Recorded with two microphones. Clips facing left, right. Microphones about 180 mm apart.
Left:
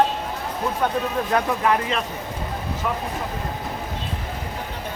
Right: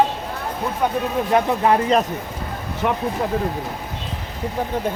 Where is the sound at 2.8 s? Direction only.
60° right (ahead or behind).